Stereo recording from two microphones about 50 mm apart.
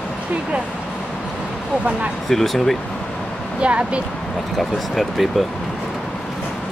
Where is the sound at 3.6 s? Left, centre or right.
Right.